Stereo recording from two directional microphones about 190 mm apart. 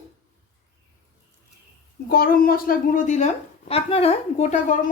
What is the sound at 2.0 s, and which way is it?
A woman's voice, 50° left (ahead or behind).